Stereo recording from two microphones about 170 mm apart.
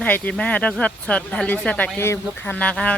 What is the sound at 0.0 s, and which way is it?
Speech, 5° left (ahead or behind).